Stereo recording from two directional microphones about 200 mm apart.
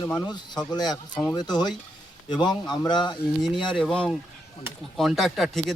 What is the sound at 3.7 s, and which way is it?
Speech, 5° left (ahead or behind).